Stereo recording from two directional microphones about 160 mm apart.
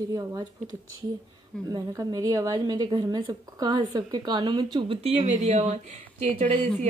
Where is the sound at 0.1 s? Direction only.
20° right (ahead or behind).